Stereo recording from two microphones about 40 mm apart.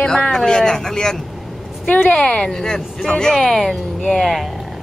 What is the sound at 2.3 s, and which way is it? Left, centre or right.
A woman's voice, centre.